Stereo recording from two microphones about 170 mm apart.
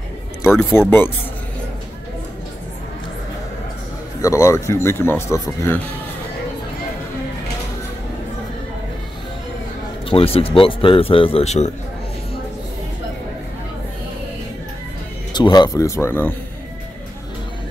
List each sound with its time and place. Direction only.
0.7 s speech: 15° left (ahead or behind)
4.2 s speech: 20° left (ahead or behind)
10.0 s speech: 35° left (ahead or behind)
15.3 s speech: 25° left (ahead or behind)